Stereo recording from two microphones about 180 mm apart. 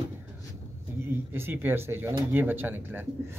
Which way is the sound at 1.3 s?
10° right (ahead or behind).